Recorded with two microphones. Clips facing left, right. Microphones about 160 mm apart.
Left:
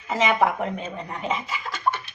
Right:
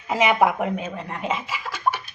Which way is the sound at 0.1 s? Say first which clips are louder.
Right 2 dB; 10° right (ahead or behind).